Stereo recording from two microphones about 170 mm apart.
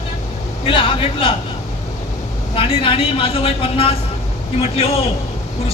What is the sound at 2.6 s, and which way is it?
A woman's voice, 35° left (ahead or behind).